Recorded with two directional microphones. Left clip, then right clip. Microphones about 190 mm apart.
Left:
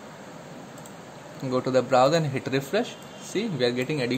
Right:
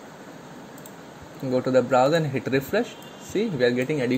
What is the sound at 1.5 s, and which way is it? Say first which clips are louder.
Speech: right 2 dB; centre (ahead or behind).